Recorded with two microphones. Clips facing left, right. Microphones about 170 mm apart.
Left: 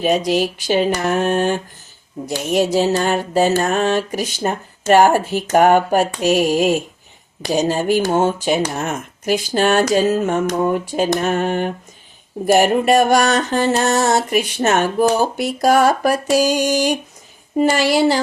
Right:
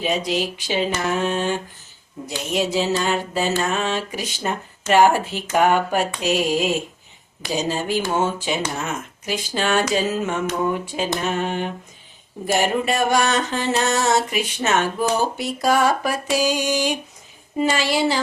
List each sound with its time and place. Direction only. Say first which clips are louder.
0.0 s speech: left 6 dB; 45° left (ahead or behind)
1.0 s a sound: left 5 dB; 55° left (ahead or behind)
2.2 s speech: left 6 dB; 45° left (ahead or behind)